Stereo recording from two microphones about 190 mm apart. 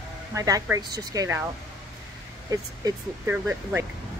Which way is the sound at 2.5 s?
15° right (ahead or behind).